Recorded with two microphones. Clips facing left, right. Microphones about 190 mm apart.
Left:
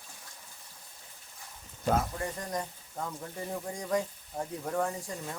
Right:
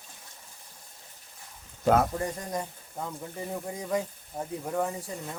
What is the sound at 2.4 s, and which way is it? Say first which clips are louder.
Speech: right 2 dB; 10° right (ahead or behind).